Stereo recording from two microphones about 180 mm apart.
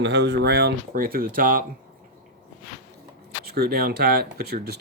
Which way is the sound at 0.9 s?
55° right (ahead or behind).